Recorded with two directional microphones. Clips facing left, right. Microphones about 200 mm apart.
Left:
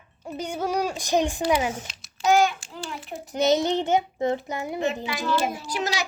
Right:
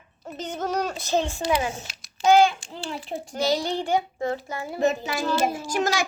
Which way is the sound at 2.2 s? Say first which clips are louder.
Right 3 dB; 30° right (ahead or behind).